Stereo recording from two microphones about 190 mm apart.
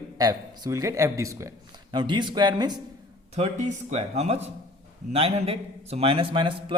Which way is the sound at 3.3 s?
35° right (ahead or behind).